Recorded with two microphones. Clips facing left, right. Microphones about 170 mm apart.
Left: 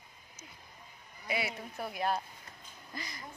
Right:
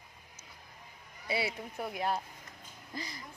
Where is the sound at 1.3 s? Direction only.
25° right (ahead or behind).